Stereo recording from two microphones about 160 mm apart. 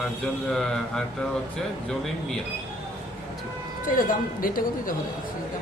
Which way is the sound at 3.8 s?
60° left (ahead or behind).